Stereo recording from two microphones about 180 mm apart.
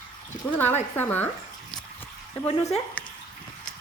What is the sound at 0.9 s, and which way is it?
Speech, 10° left (ahead or behind).